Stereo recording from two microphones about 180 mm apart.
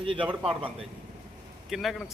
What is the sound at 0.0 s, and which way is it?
Speech, 25° right (ahead or behind).